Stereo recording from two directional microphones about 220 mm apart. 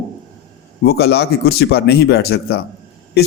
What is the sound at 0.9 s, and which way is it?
A man's voice, 45° left (ahead or behind).